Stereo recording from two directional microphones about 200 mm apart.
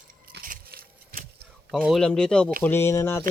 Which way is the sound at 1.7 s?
Centre (ahead or behind).